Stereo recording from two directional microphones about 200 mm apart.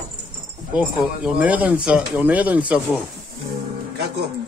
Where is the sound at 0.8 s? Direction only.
5° right (ahead or behind).